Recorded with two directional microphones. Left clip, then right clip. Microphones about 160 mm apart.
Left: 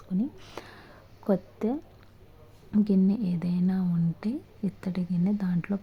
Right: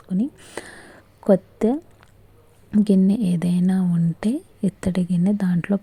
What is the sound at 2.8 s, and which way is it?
Speech, 35° right (ahead or behind).